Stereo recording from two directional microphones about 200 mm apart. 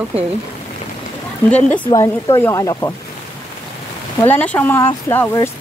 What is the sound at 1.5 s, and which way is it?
Speech, 5° left (ahead or behind).